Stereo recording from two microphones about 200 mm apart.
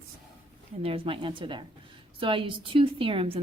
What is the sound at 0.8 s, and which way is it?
A woman's voice, 25° right (ahead or behind).